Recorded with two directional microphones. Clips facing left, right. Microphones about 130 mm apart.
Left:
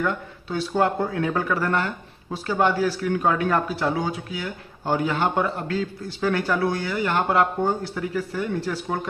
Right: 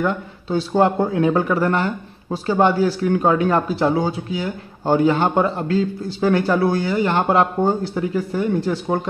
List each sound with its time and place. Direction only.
0.0 s a man's voice: 30° right (ahead or behind)